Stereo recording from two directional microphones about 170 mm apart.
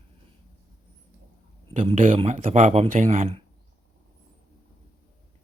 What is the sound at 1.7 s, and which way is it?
Speech, 35° right (ahead or behind).